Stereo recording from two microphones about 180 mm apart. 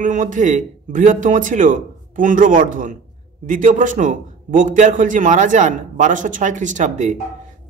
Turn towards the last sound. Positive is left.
turn(degrees=-40)  # may be behind; listen again after turning